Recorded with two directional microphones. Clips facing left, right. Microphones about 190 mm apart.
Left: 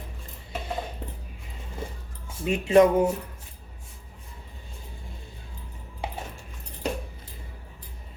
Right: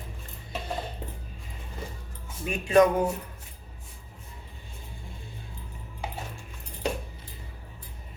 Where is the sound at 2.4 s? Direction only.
25° left (ahead or behind).